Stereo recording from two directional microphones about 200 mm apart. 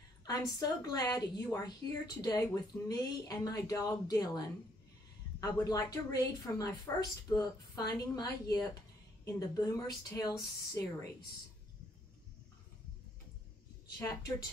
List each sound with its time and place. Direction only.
0.2 s a woman's voice: 20° left (ahead or behind)
13.9 s a woman's voice: 20° left (ahead or behind)